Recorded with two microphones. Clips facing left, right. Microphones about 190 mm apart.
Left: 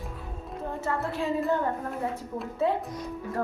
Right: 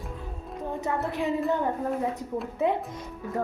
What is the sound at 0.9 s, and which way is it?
Speech, 20° right (ahead or behind).